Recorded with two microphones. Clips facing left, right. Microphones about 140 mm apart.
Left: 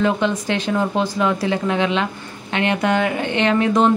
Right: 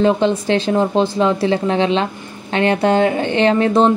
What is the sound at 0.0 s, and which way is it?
Speech, 30° right (ahead or behind).